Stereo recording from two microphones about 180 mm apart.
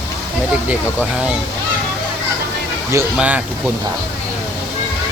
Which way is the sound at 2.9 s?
10° right (ahead or behind).